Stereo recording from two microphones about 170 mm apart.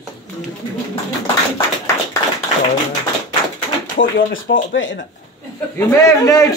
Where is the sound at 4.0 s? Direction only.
75° left (ahead or behind); by 5.0 s 90° left.